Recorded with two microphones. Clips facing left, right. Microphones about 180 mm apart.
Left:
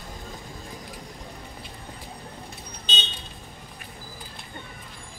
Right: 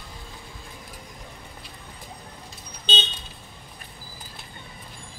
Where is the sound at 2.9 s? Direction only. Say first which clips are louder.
Right 6 dB; 30° right (ahead or behind).